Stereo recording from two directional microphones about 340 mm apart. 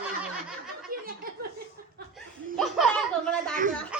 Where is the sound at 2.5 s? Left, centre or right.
Centre.